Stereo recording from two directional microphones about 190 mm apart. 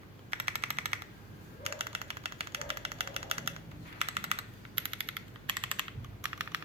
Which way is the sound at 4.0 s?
30° right (ahead or behind).